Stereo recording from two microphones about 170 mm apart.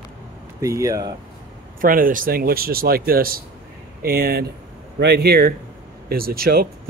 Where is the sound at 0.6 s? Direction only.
20° right (ahead or behind).